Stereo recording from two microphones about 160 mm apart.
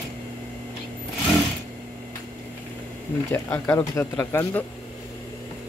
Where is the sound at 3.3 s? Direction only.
10° left (ahead or behind).